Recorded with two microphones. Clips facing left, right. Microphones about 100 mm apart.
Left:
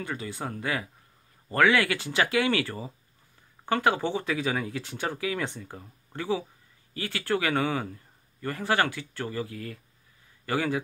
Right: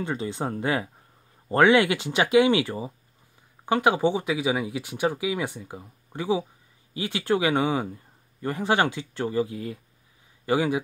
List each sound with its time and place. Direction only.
0.0 s a man's voice: 25° right (ahead or behind)